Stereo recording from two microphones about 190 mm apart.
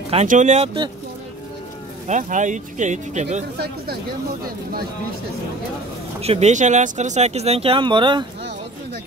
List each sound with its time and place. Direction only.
0.1 s speech: 40° right (ahead or behind)
2.0 s speech: 40° right (ahead or behind)
3.5 s speech: 55° right (ahead or behind)
6.2 s speech: 35° right (ahead or behind)